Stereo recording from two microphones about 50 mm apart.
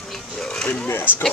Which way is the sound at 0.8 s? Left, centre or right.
Left.